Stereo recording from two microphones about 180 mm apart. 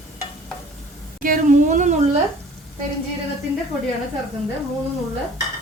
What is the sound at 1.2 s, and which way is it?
Speech, 45° right (ahead or behind).